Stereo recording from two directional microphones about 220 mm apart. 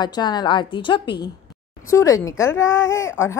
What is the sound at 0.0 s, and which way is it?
A woman's voice, 20° left (ahead or behind).